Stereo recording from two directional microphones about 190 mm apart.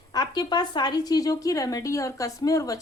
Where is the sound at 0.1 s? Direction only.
20° left (ahead or behind).